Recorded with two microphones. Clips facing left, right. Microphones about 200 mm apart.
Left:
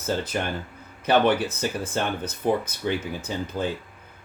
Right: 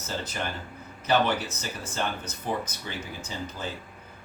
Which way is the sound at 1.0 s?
55° left (ahead or behind).